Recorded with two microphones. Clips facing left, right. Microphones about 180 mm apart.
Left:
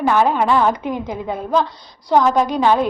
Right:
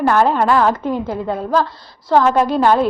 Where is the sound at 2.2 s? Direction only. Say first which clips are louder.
Right 1 dB; 5° right (ahead or behind).